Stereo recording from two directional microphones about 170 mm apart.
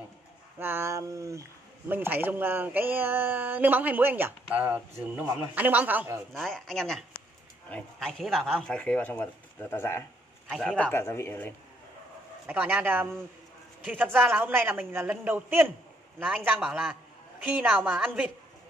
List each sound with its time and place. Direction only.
0.6 s speech: 15° right (ahead or behind)
6.3 s speech: centre (ahead or behind)
10.5 s speech: 5° left (ahead or behind)
12.4 s speech: 10° right (ahead or behind)